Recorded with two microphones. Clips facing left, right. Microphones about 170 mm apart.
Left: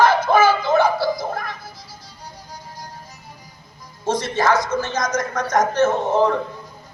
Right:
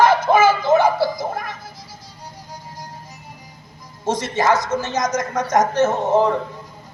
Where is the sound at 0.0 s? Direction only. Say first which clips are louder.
Right 1 dB; 20° right (ahead or behind).